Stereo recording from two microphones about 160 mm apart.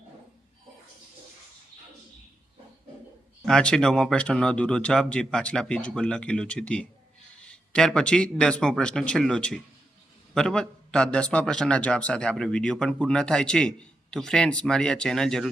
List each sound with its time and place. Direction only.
3.4 s a man's voice: 5° left (ahead or behind)